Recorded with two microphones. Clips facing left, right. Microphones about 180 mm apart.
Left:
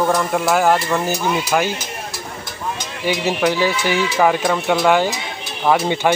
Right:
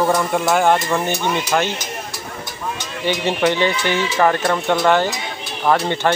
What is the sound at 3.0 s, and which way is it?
Speech, 5° left (ahead or behind).